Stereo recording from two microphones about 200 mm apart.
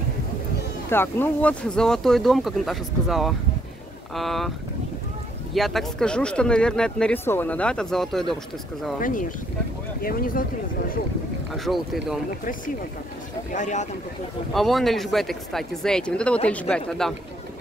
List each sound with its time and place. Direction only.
0.8 s speech: 10° left (ahead or behind)
5.5 s speech: centre (ahead or behind)
9.0 s speech: 45° left (ahead or behind)
11.6 s speech: centre (ahead or behind)
13.5 s speech: 40° left (ahead or behind)
14.5 s speech: centre (ahead or behind)